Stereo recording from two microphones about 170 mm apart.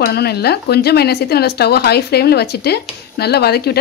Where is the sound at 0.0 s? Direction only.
70° left (ahead or behind).